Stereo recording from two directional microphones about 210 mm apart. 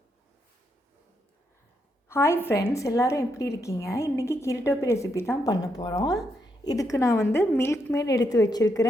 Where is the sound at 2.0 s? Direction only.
10° left (ahead or behind).